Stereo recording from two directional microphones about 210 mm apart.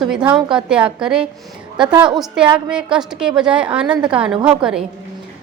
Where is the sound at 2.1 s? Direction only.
Centre (ahead or behind).